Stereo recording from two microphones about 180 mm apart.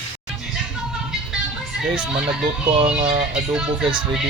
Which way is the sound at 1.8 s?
5° right (ahead or behind).